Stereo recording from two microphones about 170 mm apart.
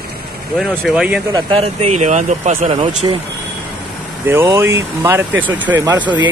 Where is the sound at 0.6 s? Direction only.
Centre (ahead or behind).